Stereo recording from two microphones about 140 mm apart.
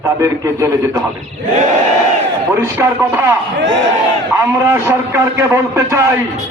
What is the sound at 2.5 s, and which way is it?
Speech, 20° right (ahead or behind).